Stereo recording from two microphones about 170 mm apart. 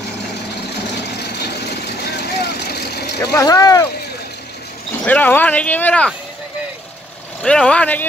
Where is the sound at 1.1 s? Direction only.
75° left (ahead or behind).